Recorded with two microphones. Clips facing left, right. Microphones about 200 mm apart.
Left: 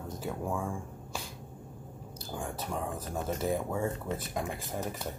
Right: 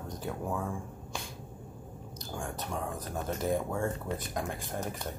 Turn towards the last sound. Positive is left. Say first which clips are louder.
# even
turn(degrees=5)  # may be behind; listen again after turning